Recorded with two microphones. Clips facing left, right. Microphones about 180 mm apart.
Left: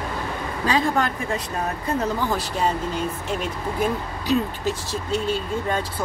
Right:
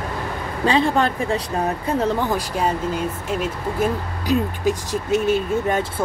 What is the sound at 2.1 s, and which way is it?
Speech, 10° right (ahead or behind).